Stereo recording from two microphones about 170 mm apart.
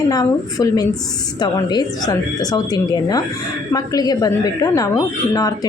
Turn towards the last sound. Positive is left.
turn(degrees=20)  # may be behind; listen again after turning